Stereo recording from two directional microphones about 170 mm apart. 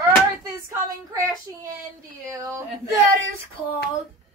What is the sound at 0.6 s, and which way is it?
A woman's voice, 15° right (ahead or behind).